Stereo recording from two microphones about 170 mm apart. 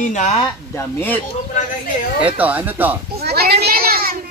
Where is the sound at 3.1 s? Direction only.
70° right (ahead or behind).